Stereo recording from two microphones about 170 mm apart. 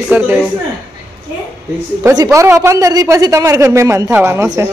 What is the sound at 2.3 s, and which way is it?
A man's voice, 15° right (ahead or behind).